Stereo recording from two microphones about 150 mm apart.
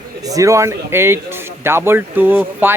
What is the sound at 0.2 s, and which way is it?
A man's voice, 25° right (ahead or behind).